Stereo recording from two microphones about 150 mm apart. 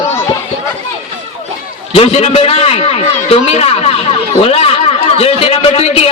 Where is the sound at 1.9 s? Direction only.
40° left (ahead or behind).